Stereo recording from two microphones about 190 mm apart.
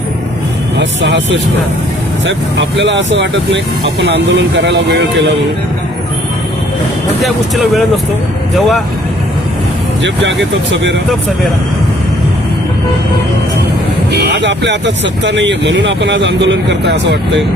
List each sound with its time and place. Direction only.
0.8 s speech: 70° right (ahead or behind)
7.2 s speech: centre (ahead or behind)
14.1 s speech: 60° right (ahead or behind)